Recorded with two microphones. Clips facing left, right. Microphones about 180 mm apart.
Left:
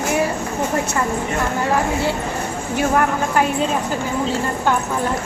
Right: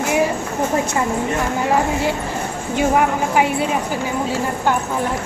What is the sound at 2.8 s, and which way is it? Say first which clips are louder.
Speech: right 1 dB; 15° right (ahead or behind).